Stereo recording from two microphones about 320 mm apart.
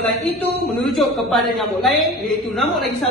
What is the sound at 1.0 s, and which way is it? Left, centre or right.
A woman's voice, centre.